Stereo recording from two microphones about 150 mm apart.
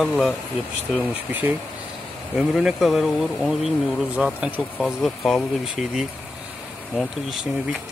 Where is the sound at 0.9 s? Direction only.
10° right (ahead or behind).